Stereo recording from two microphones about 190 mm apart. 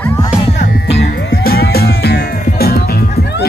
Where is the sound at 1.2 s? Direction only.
55° left (ahead or behind).